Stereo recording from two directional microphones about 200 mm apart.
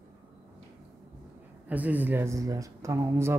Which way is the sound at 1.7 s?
10° right (ahead or behind).